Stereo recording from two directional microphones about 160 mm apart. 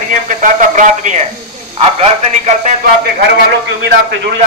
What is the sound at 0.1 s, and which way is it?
A man's voice, 55° right (ahead or behind).